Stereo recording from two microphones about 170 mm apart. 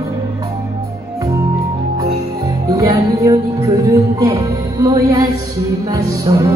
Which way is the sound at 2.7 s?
20° right (ahead or behind).